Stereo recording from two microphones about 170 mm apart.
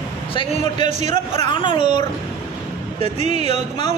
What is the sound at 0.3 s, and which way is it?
Speech, 30° left (ahead or behind).